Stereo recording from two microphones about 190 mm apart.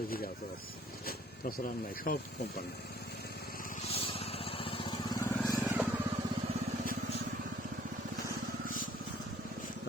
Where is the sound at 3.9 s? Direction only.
30° left (ahead or behind).